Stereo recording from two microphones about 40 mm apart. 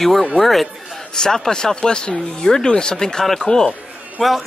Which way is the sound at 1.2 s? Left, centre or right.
Centre.